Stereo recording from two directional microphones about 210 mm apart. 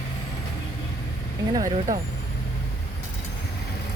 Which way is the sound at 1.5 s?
15° right (ahead or behind).